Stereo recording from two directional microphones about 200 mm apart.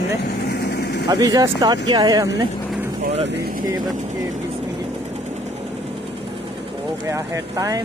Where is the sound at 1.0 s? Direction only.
20° right (ahead or behind).